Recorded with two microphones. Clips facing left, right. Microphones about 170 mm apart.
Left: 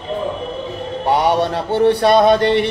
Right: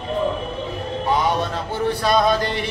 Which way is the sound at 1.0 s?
70° left (ahead or behind).